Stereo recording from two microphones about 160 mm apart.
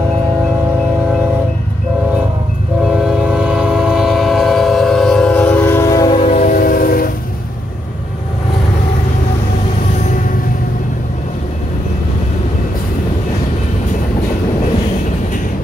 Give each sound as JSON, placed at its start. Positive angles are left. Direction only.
{"t": 2.8, "sound": "train", "side_deg": -5}
{"t": 6.1, "sound": "train", "side_deg": 45}